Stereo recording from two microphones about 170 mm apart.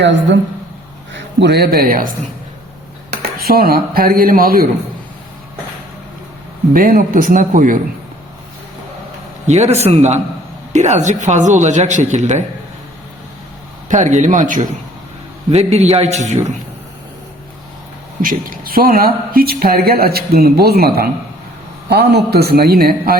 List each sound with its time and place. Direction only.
0.0 s a man's voice: 90° right; by 4.6 s 60° right (ahead or behind)
6.7 s speech: 55° right (ahead or behind)
9.5 s a man's voice: 40° right (ahead or behind)
13.8 s speech: 45° right (ahead or behind)
15.4 s a man's voice: 40° right (ahead or behind)
18.2 s a woman's voice: 55° right (ahead or behind)
21.8 s a man's voice: 75° right (ahead or behind)